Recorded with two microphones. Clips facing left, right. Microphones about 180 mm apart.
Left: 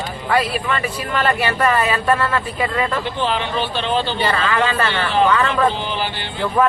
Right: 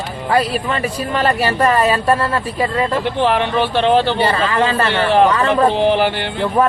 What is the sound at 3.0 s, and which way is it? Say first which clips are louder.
Speech: right 5 dB; 65° right (ahead or behind).